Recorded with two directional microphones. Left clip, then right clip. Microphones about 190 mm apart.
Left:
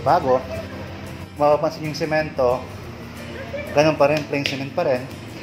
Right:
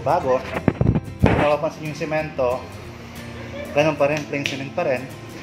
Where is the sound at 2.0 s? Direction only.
5° left (ahead or behind).